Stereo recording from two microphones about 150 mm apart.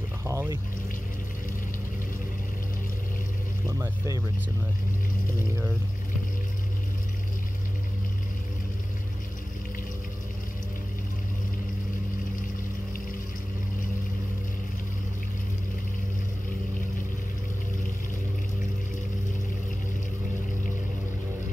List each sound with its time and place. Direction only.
0.2 s pour: 20° right (ahead or behind)
3.6 s speech: 15° right (ahead or behind)